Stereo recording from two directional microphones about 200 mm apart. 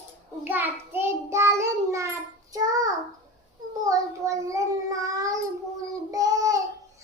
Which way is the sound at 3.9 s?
15° right (ahead or behind).